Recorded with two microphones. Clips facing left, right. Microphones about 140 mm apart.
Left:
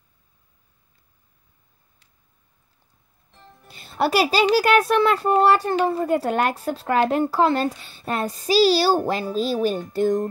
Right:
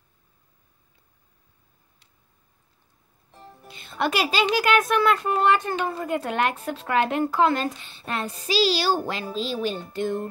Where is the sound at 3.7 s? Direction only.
35° left (ahead or behind).